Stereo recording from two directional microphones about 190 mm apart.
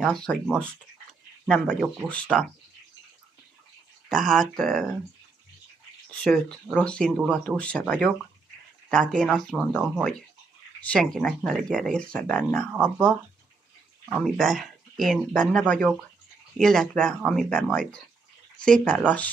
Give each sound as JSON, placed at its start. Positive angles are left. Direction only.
{"t": 0.0, "sound": "speech", "side_deg": 5}
{"t": 4.1, "sound": "speech", "side_deg": 0}
{"t": 6.2, "sound": "speech", "side_deg": 5}
{"t": 11.1, "sound": "speech", "side_deg": 5}
{"t": 12.7, "sound": "speech", "side_deg": -10}
{"t": 14.1, "sound": "speech", "side_deg": 0}